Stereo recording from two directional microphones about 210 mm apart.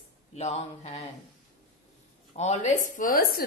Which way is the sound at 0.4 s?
30° left (ahead or behind).